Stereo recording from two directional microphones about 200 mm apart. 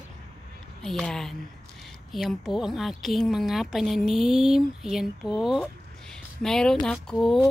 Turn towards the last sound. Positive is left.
turn(degrees=0)  # may be behind; listen again after turning